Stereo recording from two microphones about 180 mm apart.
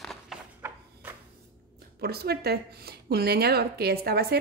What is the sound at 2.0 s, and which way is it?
Speech, 60° right (ahead or behind).